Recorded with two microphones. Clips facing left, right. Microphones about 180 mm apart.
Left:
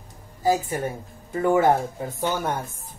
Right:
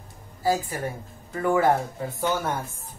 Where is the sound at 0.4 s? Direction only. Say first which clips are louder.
Left 3 dB; 20° left (ahead or behind).